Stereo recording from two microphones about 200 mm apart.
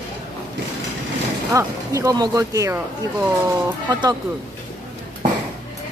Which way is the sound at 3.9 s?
20° right (ahead or behind).